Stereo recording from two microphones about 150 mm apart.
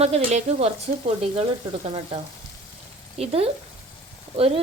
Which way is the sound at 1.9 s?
35° right (ahead or behind).